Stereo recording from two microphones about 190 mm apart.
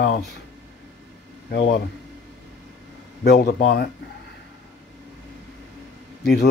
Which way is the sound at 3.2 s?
55° left (ahead or behind).